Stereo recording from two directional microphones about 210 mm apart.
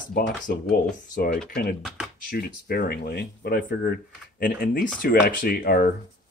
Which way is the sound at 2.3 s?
45° left (ahead or behind).